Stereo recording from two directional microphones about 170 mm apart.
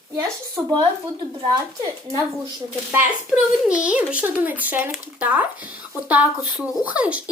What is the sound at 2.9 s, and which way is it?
A woman's voice, 5° right (ahead or behind).